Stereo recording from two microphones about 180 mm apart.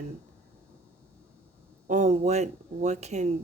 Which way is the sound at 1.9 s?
40° right (ahead or behind).